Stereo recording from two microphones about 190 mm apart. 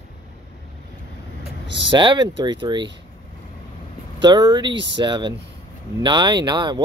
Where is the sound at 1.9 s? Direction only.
25° right (ahead or behind).